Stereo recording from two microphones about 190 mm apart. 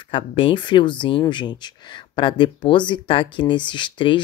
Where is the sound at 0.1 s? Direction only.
25° left (ahead or behind).